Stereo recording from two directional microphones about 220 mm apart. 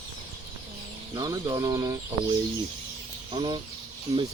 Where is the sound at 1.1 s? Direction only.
20° right (ahead or behind).